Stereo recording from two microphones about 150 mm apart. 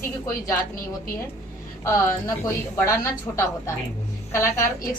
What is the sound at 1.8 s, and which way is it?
A woman's voice, 20° left (ahead or behind).